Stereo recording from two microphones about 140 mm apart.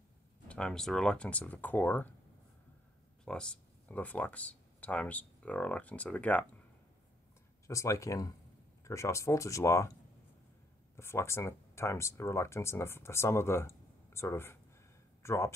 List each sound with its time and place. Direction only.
0.5 s speech: 5° left (ahead or behind)
3.3 s speech: 5° left (ahead or behind)
7.6 s speech: 20° left (ahead or behind)
11.0 s speech: 20° left (ahead or behind)